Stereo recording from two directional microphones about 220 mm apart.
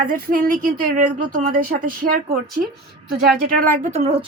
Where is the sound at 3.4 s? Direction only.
40° right (ahead or behind).